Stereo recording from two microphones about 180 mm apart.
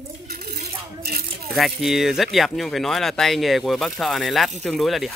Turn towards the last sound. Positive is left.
turn(degrees=0)  # may be behind; listen again after turning